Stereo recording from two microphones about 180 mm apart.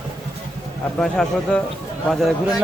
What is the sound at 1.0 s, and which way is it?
Speech, 5° left (ahead or behind).